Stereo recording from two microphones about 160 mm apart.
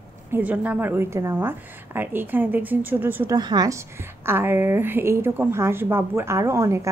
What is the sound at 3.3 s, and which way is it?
A woman's voice, 25° right (ahead or behind).